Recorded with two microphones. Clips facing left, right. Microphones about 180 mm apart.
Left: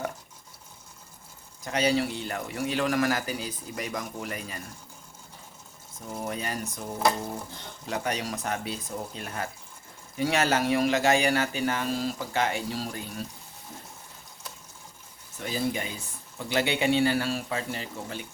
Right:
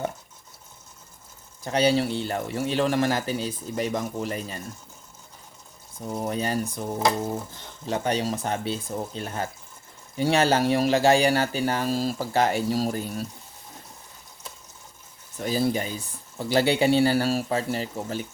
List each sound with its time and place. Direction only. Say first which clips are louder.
1.6 s speech: right 4 dB; 30° right (ahead or behind)
6.1 s speech: right 6 dB; 30° right (ahead or behind)
7.9 s speech: right 5 dB; 30° right (ahead or behind)
15.4 s speech: right 5 dB; 35° right (ahead or behind)